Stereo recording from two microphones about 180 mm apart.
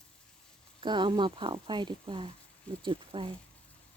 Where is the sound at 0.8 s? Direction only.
25° right (ahead or behind).